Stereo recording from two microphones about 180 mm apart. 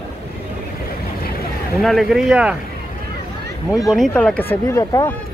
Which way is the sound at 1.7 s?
Centre (ahead or behind).